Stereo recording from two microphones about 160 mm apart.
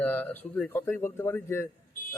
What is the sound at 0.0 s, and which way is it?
A man's voice, 10° left (ahead or behind).